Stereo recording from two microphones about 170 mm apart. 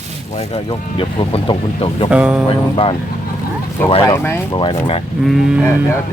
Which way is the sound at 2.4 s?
30° left (ahead or behind).